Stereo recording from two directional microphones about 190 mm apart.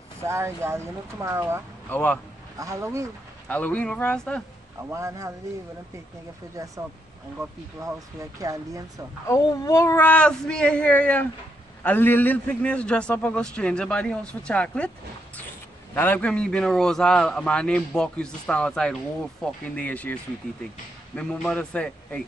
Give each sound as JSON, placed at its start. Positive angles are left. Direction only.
{"t": 0.2, "sound": "speech", "side_deg": -15}
{"t": 1.9, "sound": "speech", "side_deg": 10}
{"t": 2.6, "sound": "speech", "side_deg": -15}
{"t": 3.4, "sound": "speech", "side_deg": 5}
{"t": 4.9, "sound": "speech", "side_deg": -15}
{"t": 8.4, "sound": "speech", "side_deg": -20}
{"t": 9.3, "sound": "a man's voice", "side_deg": 15}
{"t": 15.9, "sound": "a man's voice", "side_deg": 10}
{"t": 21.2, "sound": "a man's voice", "side_deg": 5}